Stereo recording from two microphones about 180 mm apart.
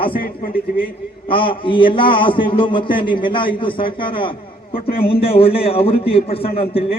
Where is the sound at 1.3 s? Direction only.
30° left (ahead or behind).